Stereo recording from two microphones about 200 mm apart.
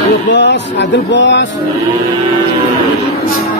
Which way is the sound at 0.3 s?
60° left (ahead or behind).